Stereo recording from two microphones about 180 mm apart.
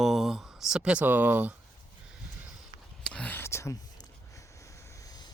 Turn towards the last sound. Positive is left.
turn(degrees=20)  # may be behind; listen again after turning